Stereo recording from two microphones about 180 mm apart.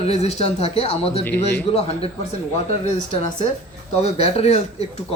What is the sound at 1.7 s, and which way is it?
Speech, 35° left (ahead or behind).